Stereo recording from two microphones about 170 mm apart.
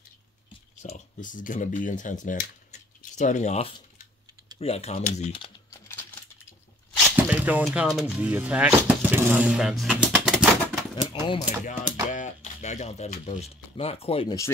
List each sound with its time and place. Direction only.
1.2 s speech: 50° left (ahead or behind)
7.1 s squish: 10° right (ahead or behind)
7.6 s speech: 5° right (ahead or behind)
11.1 s a sound: 20° left (ahead or behind)
11.6 s speech: 50° left (ahead or behind)